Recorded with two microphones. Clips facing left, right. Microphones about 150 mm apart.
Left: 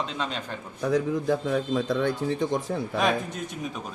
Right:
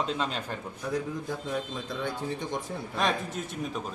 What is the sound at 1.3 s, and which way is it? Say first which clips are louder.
Speech: left 10 dB; 90° left.